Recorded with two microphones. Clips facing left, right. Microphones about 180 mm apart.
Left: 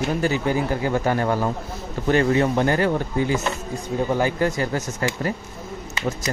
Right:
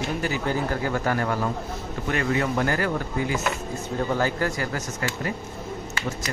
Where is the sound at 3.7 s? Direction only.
15° left (ahead or behind).